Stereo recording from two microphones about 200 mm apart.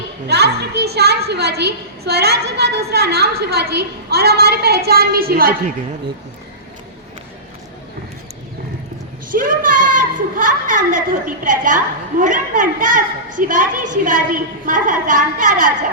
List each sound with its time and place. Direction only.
0.3 s a woman's voice: 55° right (ahead or behind)
9.3 s a woman's voice: 45° right (ahead or behind)